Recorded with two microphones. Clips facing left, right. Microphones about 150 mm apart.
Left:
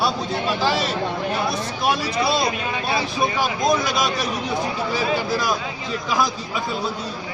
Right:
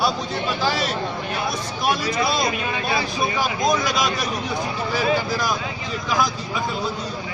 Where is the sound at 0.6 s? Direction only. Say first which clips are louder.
Even; centre (ahead or behind).